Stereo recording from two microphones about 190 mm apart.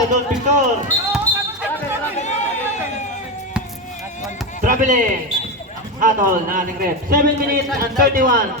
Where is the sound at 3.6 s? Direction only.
5° right (ahead or behind).